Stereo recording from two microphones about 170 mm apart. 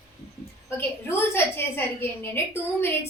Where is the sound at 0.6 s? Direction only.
15° left (ahead or behind).